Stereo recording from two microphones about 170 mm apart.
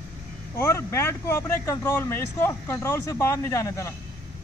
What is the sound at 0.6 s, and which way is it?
Speech, 15° left (ahead or behind).